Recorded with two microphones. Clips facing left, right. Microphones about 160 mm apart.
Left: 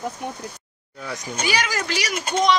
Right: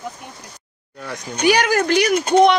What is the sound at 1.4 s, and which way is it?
Speech, 60° right (ahead or behind).